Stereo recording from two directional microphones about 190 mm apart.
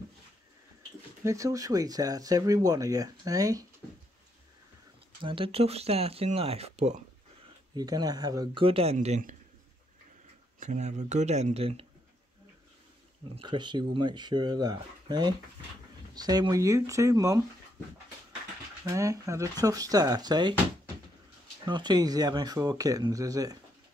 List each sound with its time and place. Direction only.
1.2 s speech: 15° right (ahead or behind)
5.2 s speech: 30° right (ahead or behind)
7.7 s speech: 20° right (ahead or behind); by 9.4 s 40° right (ahead or behind)
10.6 s speech: 40° right (ahead or behind)
13.3 s speech: 25° right (ahead or behind)
18.9 s speech: 15° right (ahead or behind)
21.6 s speech: 25° right (ahead or behind)